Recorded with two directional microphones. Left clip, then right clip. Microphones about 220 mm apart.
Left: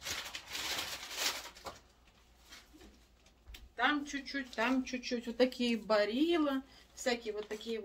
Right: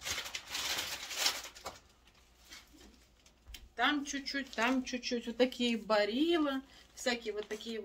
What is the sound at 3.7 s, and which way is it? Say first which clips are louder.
Speech: even; 50° right (ahead or behind).